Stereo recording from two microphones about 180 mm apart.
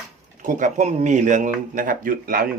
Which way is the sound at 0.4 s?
45° right (ahead or behind).